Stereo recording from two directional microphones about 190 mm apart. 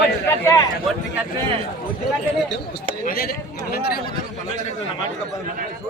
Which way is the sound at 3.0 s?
50° left (ahead or behind).